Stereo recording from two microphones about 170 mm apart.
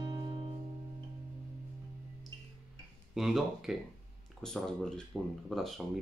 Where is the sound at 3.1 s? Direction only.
Centre (ahead or behind).